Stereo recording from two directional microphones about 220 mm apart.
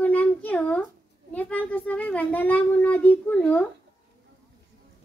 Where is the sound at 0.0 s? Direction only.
5° left (ahead or behind).